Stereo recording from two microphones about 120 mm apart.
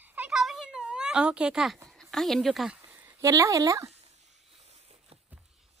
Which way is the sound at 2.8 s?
15° right (ahead or behind).